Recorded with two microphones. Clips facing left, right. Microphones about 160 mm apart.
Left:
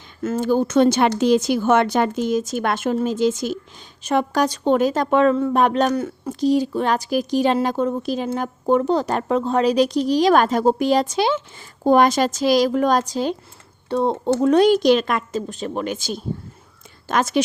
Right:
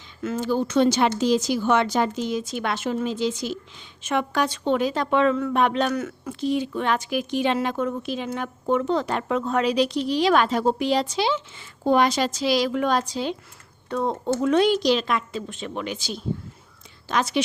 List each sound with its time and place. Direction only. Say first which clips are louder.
0.2 s speech: left 5 dB; 45° left (ahead or behind)
4.0 s a woman's voice: left 4 dB; 40° left (ahead or behind)
13.9 s speech: left 5 dB; 30° left (ahead or behind); by 17.4 s 45° left (ahead or behind)